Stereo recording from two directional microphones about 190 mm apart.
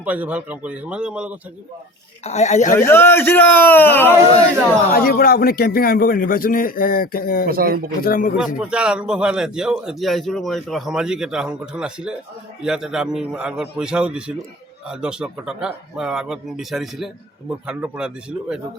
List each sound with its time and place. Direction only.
0.0 s speech: 10° right (ahead or behind)
2.2 s speech: 35° left (ahead or behind)
2.7 s a man's voice: 10° left (ahead or behind)
4.9 s a man's voice: 50° left (ahead or behind)
7.4 s speech: 50° right (ahead or behind)
8.0 s a man's voice: 50° left (ahead or behind)
8.5 s a man's voice: 5° right (ahead or behind)